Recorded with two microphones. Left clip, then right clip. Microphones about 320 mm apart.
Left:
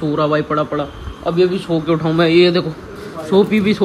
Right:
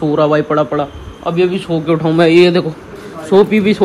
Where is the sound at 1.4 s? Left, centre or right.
Centre.